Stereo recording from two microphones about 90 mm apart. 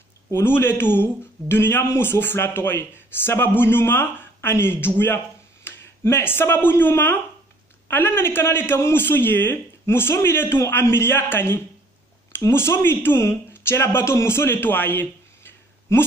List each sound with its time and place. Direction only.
0.3 s a man's voice: 25° left (ahead or behind)